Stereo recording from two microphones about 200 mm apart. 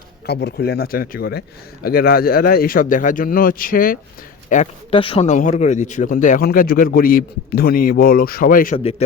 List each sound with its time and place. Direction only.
0.3 s speech: 55° left (ahead or behind)